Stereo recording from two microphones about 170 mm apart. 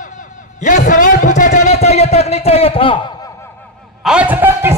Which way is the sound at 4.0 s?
5° right (ahead or behind).